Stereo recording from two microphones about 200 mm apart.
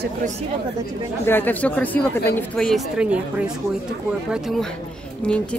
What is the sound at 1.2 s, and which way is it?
A woman's voice, 10° left (ahead or behind).